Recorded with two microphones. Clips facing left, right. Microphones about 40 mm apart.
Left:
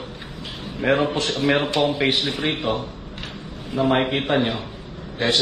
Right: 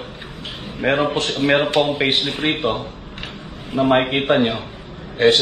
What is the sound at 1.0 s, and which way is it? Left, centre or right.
A man's voice, right.